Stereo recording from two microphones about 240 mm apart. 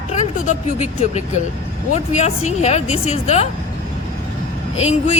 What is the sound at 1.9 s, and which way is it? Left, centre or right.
Speech, left.